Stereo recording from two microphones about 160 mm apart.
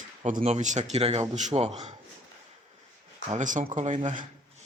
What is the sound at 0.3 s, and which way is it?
Speech, 45° right (ahead or behind).